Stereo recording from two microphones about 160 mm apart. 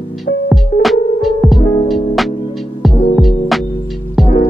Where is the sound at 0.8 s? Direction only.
Centre (ahead or behind).